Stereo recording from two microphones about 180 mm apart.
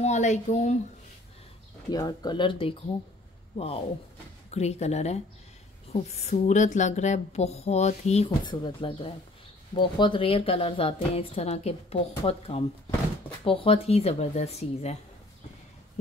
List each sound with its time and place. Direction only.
0.0 s a woman's voice: 40° left (ahead or behind)
1.9 s a woman's voice: 20° left (ahead or behind); by 8.3 s 35° left (ahead or behind)
8.5 s a woman's voice: 25° left (ahead or behind)